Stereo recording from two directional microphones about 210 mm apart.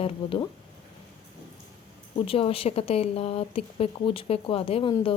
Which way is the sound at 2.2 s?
25° left (ahead or behind).